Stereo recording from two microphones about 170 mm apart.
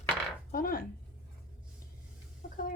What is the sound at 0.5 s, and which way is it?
Speech, 55° left (ahead or behind).